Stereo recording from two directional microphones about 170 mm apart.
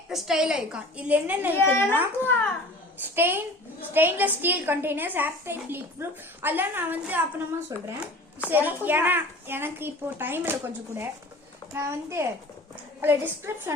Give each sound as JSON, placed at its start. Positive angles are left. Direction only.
{"t": 0.1, "sound": "a woman's voice", "side_deg": 0}
{"t": 1.5, "sound": "a child's voice", "side_deg": 15}
{"t": 3.0, "sound": "a woman's voice", "side_deg": -10}
{"t": 7.7, "sound": "speech", "side_deg": -20}
{"t": 8.4, "sound": "a woman's voice", "side_deg": -10}